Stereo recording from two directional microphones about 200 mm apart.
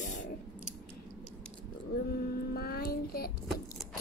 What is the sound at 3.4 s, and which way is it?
Keys jangling, centre (ahead or behind).